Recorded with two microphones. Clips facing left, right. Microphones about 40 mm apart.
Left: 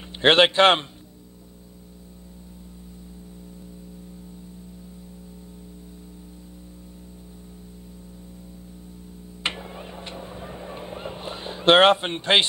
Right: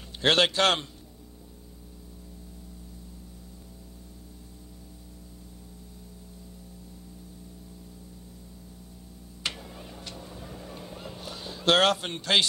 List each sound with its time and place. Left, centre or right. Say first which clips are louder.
0.2 s a man's voice: left 6 dB; left
9.4 s honk: left 5 dB; left